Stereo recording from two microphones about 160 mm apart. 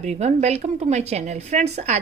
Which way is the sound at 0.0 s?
45° right (ahead or behind).